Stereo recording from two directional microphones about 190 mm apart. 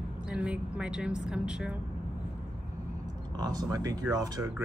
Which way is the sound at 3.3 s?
20° right (ahead or behind).